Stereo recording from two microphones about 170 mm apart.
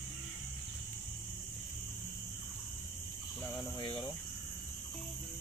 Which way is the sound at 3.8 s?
30° left (ahead or behind).